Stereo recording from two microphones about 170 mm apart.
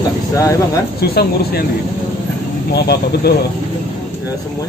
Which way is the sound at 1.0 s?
65° left (ahead or behind).